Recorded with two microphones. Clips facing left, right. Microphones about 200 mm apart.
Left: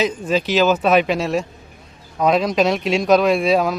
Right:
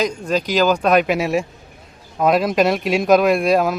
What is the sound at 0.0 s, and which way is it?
A man's voice, 5° left (ahead or behind).